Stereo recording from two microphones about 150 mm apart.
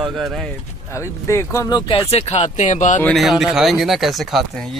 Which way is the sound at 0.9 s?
20° left (ahead or behind).